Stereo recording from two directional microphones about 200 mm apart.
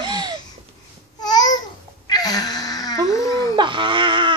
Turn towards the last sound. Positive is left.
turn(degrees=-25)  # may be behind; listen again after turning